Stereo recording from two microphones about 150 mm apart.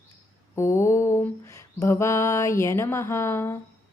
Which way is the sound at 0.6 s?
20° left (ahead or behind).